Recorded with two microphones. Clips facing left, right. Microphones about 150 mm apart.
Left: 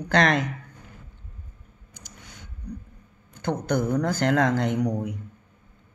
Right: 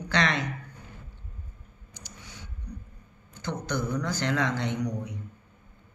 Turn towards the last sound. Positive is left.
turn(degrees=50)  # may be behind; listen again after turning